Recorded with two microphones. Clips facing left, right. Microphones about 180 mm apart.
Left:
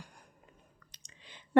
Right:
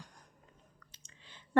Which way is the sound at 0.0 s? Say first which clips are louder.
Left 2 dB; 10° left (ahead or behind).